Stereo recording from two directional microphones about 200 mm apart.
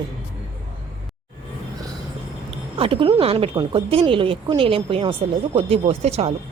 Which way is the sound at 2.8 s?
25° right (ahead or behind).